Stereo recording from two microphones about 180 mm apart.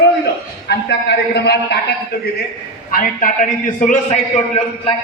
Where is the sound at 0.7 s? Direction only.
70° left (ahead or behind).